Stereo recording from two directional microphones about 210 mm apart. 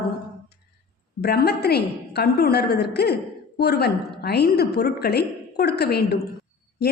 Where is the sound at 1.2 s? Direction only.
50° left (ahead or behind).